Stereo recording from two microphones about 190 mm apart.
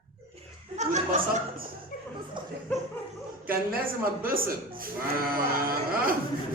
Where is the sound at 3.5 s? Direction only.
50° right (ahead or behind).